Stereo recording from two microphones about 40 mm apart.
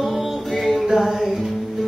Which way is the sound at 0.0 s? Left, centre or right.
Centre.